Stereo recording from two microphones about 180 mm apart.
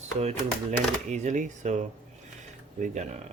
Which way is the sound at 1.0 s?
40° right (ahead or behind).